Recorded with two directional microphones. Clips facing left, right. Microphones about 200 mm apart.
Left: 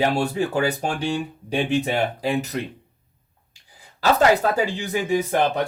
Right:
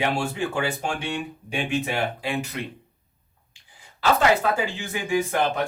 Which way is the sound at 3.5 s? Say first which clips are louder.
Left 2 dB; 40° left (ahead or behind).